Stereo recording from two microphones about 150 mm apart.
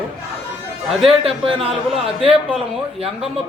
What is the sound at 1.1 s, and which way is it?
A man's voice, 40° right (ahead or behind).